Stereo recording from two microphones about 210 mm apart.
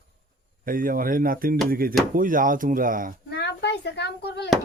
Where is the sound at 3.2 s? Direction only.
50° left (ahead or behind).